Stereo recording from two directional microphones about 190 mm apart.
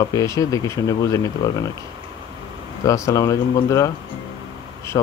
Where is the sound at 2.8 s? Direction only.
15° left (ahead or behind).